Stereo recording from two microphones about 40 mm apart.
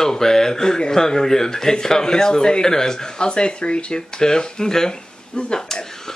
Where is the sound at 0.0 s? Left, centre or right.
Centre.